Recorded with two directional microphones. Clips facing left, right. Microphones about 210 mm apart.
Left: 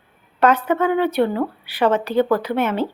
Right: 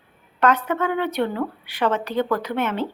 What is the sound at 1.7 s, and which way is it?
Speech, 5° left (ahead or behind).